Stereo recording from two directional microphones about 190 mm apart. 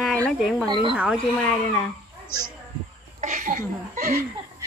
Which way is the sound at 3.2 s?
40° right (ahead or behind).